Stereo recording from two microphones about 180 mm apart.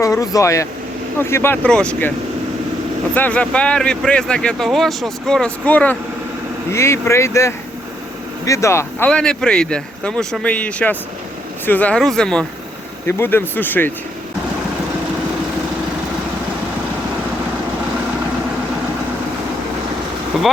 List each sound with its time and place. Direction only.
0.0 s speech: 15° left (ahead or behind)
3.2 s speech: 10° left (ahead or behind)